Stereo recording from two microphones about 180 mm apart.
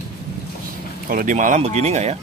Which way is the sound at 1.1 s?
50° right (ahead or behind).